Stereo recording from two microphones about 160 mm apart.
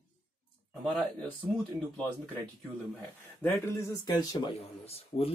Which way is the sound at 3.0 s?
15° left (ahead or behind).